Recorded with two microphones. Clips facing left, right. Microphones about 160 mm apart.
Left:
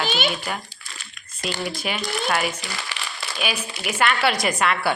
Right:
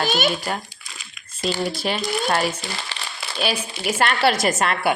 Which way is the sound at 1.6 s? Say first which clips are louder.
Right 2 dB; 35° right (ahead or behind).